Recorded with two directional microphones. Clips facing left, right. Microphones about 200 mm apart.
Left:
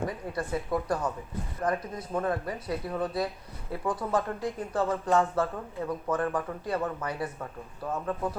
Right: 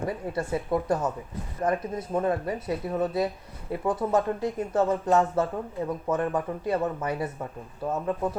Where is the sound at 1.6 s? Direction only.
20° right (ahead or behind).